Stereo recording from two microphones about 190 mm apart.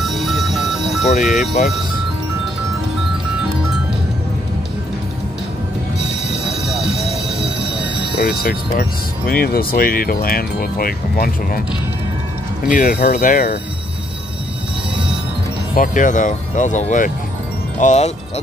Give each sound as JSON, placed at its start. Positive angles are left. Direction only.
{"t": 0.0, "sound": "a sound", "side_deg": 0}
{"t": 1.2, "sound": "speech", "side_deg": 0}
{"t": 8.2, "sound": "speech", "side_deg": 55}
{"t": 12.6, "sound": "speech", "side_deg": 45}
{"t": 15.7, "sound": "speech", "side_deg": 45}